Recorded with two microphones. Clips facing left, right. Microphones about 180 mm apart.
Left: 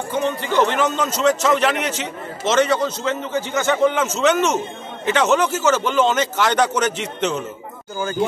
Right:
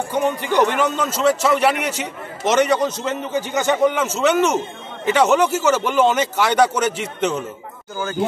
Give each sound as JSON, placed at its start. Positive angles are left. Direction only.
{"t": 0.1, "sound": "a man's voice", "side_deg": -10}